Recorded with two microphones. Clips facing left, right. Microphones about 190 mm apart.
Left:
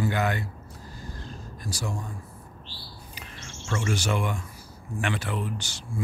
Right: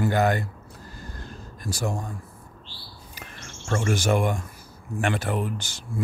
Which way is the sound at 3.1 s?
50° right (ahead or behind).